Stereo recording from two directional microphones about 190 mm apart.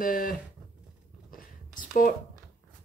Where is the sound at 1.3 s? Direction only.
45° left (ahead or behind).